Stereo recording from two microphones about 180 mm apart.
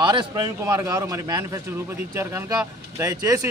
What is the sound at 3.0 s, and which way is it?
Speech, 15° right (ahead or behind).